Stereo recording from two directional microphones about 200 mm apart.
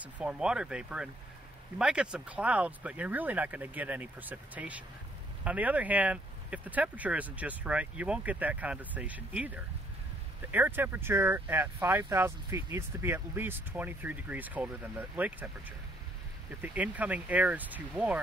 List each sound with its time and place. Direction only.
0.0 s speech: 5° right (ahead or behind)
16.6 s speech: 5° right (ahead or behind)